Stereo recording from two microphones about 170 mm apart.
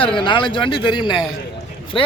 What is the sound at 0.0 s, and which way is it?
Speech, 30° left (ahead or behind).